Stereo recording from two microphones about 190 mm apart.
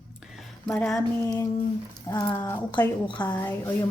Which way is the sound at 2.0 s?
15° left (ahead or behind).